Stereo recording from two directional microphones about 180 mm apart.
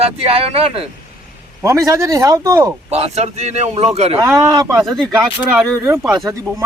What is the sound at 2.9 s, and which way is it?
Speech, 35° right (ahead or behind).